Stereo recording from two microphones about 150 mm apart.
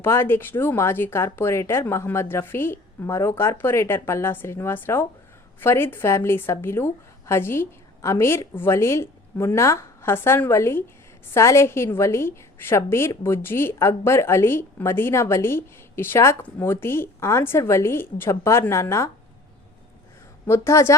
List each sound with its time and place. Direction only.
0.0 s a woman's voice: 15° left (ahead or behind)
20.5 s a woman's voice: 20° left (ahead or behind)